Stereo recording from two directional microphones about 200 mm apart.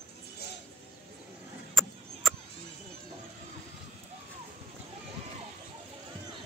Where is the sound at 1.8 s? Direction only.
Centre (ahead or behind).